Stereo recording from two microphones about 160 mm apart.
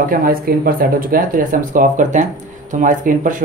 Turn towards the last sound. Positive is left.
turn(degrees=-55)  # may be behind; listen again after turning